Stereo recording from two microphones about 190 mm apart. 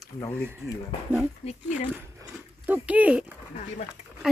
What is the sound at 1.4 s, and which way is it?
Speech, 30° left (ahead or behind).